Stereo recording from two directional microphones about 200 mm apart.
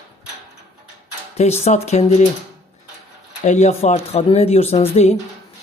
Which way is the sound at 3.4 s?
35° left (ahead or behind).